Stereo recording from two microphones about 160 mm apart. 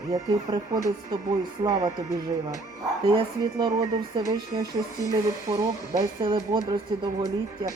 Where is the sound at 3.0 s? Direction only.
30° right (ahead or behind).